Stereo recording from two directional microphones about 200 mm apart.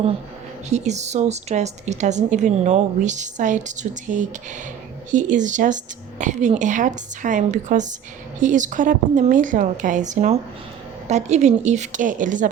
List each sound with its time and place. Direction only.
0.7 s a woman's voice: 35° right (ahead or behind)